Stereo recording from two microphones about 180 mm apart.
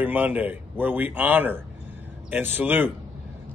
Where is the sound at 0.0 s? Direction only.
10° right (ahead or behind).